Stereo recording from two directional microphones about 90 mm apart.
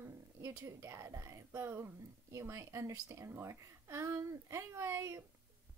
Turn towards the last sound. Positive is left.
turn(degrees=-30)  # may be behind; listen again after turning